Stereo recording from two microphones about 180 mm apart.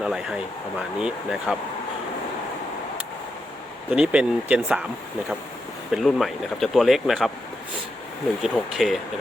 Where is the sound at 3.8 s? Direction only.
5° right (ahead or behind).